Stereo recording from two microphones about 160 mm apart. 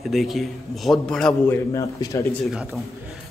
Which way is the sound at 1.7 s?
20° left (ahead or behind).